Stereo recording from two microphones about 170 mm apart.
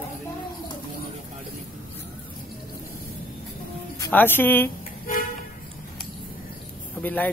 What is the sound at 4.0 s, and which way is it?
Speech, 10° left (ahead or behind).